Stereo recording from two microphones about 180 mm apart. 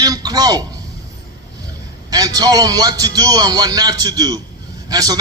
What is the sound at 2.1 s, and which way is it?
A man's voice, 20° right (ahead or behind).